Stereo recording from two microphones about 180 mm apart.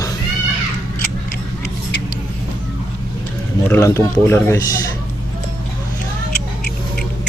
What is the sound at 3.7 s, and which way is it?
Speech, 15° left (ahead or behind).